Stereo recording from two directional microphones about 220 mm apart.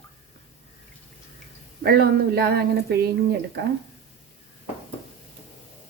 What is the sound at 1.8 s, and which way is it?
A woman's voice, 45° right (ahead or behind).